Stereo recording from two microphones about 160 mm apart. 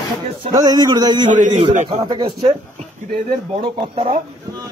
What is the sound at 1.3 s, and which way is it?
Speech, 50° right (ahead or behind).